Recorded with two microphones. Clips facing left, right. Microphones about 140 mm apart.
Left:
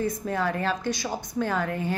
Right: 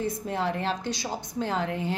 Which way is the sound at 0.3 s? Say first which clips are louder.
Left 1 dB; 20° right (ahead or behind).